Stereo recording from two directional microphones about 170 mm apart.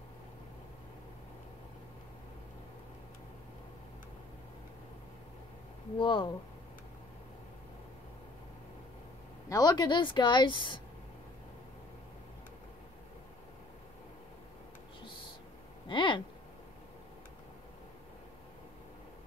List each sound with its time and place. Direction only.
5.9 s a woman's voice: 30° left (ahead or behind)
9.5 s a woman's voice: 25° left (ahead or behind)
15.9 s speech: 30° left (ahead or behind)